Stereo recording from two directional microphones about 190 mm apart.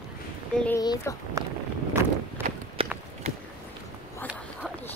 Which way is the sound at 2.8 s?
30° right (ahead or behind).